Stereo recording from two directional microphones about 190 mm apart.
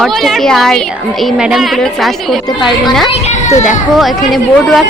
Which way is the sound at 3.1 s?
40° left (ahead or behind).